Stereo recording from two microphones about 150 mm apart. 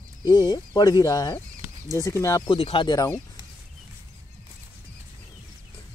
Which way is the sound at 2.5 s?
35° left (ahead or behind).